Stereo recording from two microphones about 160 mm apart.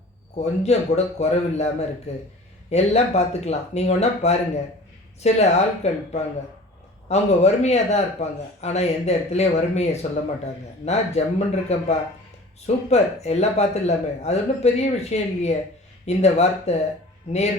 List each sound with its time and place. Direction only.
0.3 s speech: 45° left (ahead or behind)